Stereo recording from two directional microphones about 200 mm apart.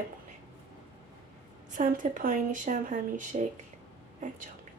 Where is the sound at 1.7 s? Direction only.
40° right (ahead or behind).